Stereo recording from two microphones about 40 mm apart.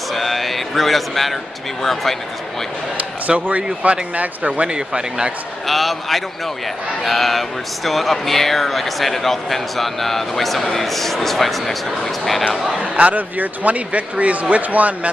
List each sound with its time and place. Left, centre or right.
0.1 s speech: centre
3.0 s a sound: right
3.8 s a man's voice: right
4.6 s speech: right
5.7 s speech: centre
12.9 s a man's voice: right